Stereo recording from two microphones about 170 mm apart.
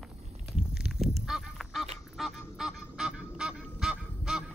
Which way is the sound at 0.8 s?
Centre (ahead or behind).